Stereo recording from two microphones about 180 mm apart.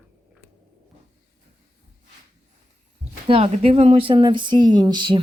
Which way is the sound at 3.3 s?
35° right (ahead or behind).